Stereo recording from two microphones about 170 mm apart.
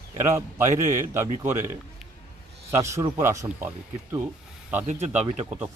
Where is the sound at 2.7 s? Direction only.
15° right (ahead or behind).